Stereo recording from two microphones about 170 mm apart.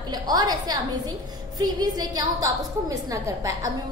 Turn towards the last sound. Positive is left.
turn(degrees=-20)  # may be behind; listen again after turning